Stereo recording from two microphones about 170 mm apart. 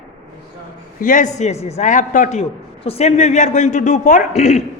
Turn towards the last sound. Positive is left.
turn(degrees=40)  # may be behind; listen again after turning